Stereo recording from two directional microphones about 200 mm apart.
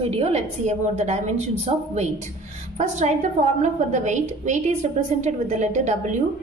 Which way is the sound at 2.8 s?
35° right (ahead or behind).